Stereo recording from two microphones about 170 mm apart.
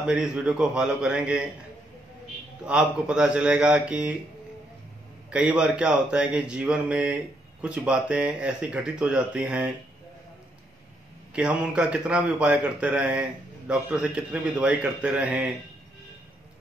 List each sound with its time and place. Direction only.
0.0 s a man's voice: 5° right (ahead or behind)
2.6 s a man's voice: 5° right (ahead or behind)
5.3 s a man's voice: 5° right (ahead or behind)
11.3 s a man's voice: 5° right (ahead or behind)